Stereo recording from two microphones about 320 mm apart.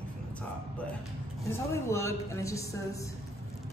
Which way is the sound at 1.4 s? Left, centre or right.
Centre.